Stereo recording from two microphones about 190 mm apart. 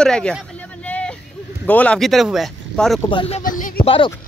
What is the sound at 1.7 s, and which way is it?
Speech, 5° left (ahead or behind).